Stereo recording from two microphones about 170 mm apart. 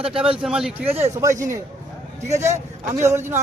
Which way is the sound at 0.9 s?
40° right (ahead or behind).